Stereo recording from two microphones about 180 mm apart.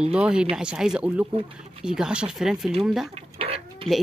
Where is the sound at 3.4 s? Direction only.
30° right (ahead or behind).